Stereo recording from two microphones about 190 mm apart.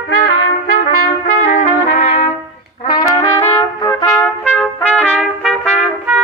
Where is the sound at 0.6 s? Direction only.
45° left (ahead or behind).